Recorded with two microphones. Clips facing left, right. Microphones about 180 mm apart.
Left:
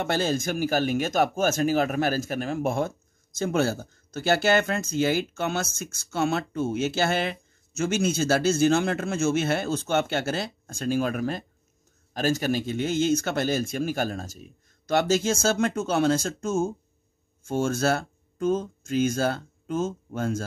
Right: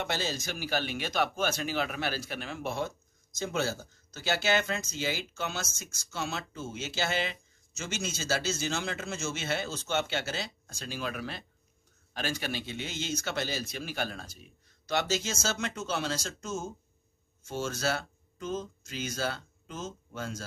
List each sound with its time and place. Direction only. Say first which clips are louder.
0.0 s speech: left 8 dB; 50° left (ahead or behind)